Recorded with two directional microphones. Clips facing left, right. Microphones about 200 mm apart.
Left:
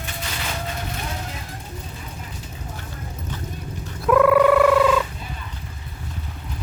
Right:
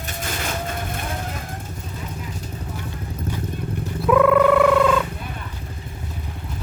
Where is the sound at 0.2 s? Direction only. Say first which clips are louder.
Right 5 dB; 50° right (ahead or behind).